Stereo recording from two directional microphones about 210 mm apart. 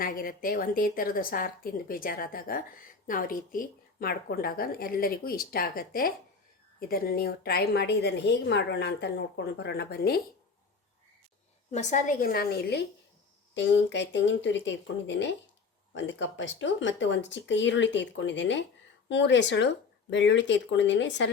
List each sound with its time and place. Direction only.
0.0 s a woman's voice: 40° left (ahead or behind)
11.7 s a woman's voice: 35° left (ahead or behind); by 21.2 s 60° left (ahead or behind)